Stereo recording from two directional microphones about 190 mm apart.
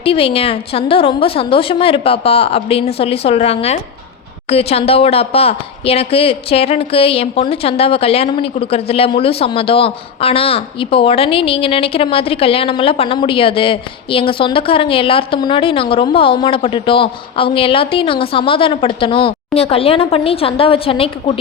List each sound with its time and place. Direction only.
0.0 s a woman's voice: 30° left (ahead or behind)